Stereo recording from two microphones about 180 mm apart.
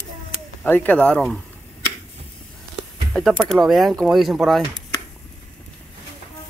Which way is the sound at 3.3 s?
Centre (ahead or behind).